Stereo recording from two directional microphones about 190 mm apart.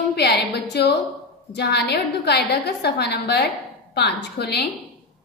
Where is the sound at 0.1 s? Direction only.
60° left (ahead or behind).